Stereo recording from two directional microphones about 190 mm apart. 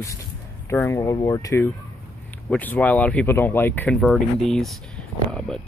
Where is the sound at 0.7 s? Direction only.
15° left (ahead or behind).